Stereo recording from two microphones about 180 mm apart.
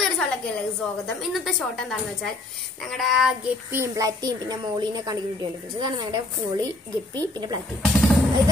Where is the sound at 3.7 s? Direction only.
15° right (ahead or behind).